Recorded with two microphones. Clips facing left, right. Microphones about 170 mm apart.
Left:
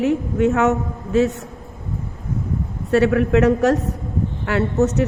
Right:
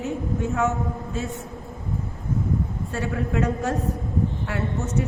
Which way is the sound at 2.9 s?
70° left (ahead or behind).